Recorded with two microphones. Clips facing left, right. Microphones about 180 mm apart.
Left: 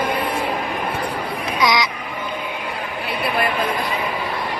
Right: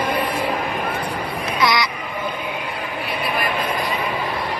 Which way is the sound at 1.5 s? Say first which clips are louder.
Left 1 dB; 15° left (ahead or behind).